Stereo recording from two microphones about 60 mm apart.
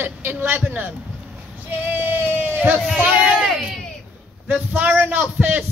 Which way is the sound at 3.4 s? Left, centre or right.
Centre.